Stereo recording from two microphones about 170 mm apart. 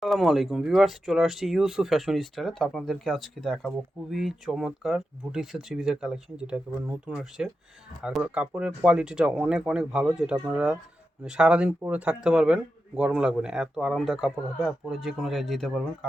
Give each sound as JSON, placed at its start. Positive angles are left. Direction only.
{"t": 0.0, "sound": "speech", "side_deg": 0}